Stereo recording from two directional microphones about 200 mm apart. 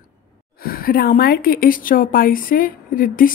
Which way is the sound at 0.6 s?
45° left (ahead or behind).